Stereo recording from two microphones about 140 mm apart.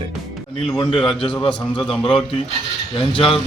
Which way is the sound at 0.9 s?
40° left (ahead or behind).